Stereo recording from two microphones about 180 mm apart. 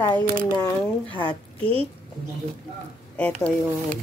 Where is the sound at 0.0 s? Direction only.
25° left (ahead or behind).